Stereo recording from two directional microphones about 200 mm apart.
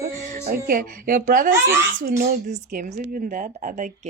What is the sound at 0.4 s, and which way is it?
A woman's voice, 45° right (ahead or behind).